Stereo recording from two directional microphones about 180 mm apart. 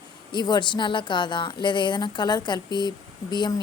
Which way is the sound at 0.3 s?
25° left (ahead or behind).